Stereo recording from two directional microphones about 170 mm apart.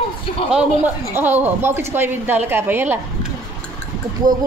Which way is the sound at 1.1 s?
10° right (ahead or behind).